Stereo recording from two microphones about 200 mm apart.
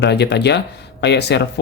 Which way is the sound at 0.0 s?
60° left (ahead or behind).